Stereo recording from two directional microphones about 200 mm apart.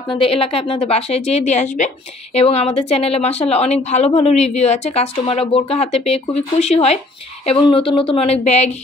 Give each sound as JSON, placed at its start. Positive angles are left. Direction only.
{"t": 0.1, "sound": "a woman's voice", "side_deg": 30}